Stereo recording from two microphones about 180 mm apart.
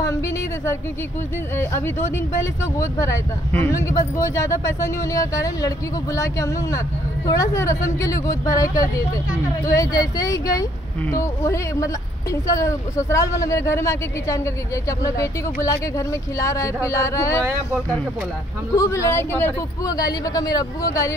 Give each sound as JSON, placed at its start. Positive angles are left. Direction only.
{"t": 1.6, "sound": "speech", "side_deg": 15}
{"t": 18.8, "sound": "speech", "side_deg": 15}